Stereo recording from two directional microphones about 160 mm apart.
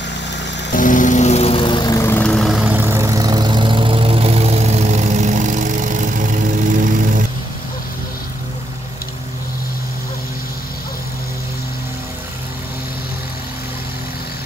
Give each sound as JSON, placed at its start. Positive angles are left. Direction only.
{"t": 0.7, "sound": "vehicle", "side_deg": 55}